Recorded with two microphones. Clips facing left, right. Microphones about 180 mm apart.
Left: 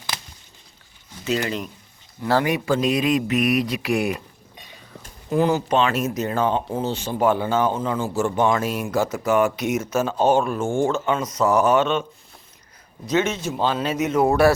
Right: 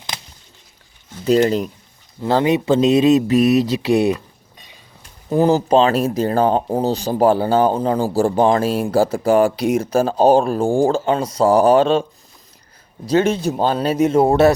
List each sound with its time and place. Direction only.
1.2 s speech: 40° right (ahead or behind)
2.2 s speech: 20° right (ahead or behind)
5.3 s speech: 35° right (ahead or behind)
13.1 s speech: 35° right (ahead or behind)